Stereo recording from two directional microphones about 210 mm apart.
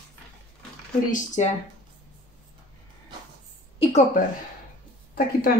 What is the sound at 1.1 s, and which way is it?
Speech, 35° left (ahead or behind).